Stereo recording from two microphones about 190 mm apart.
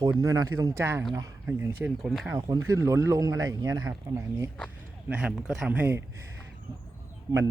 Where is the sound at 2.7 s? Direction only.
15° right (ahead or behind).